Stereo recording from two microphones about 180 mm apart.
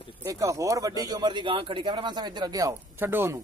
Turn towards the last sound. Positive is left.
turn(degrees=-10)  # may be behind; listen again after turning